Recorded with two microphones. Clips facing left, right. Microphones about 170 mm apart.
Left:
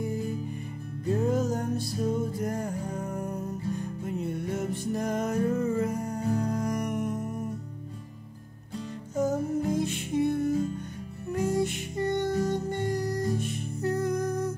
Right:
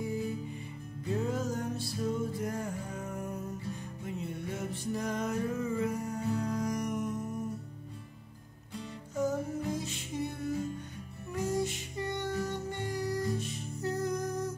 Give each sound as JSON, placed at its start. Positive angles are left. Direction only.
{"t": 0.0, "sound": "music", "side_deg": 45}
{"t": 9.1, "sound": "music", "side_deg": 45}